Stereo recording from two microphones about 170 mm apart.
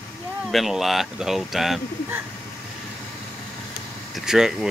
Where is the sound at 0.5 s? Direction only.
Centre (ahead or behind).